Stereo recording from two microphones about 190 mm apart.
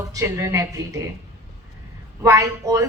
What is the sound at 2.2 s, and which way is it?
Speech, 15° right (ahead or behind).